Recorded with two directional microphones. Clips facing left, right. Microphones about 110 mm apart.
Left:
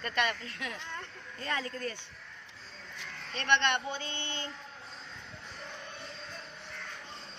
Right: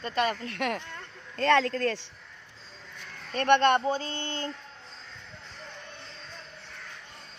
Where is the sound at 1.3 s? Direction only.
85° right.